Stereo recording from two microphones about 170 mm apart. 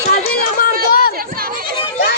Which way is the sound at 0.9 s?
60° left (ahead or behind).